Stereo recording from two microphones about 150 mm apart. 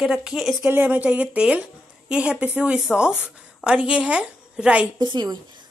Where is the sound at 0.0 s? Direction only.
5° right (ahead or behind).